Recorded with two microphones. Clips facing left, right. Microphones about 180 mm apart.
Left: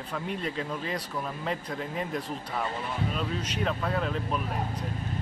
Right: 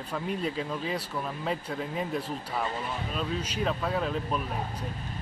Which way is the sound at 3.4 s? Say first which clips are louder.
Even; 10° right (ahead or behind).